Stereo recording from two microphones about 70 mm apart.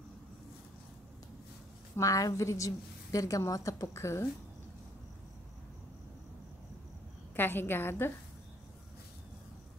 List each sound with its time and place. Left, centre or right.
2.0 s a woman's voice: left
7.3 s a woman's voice: left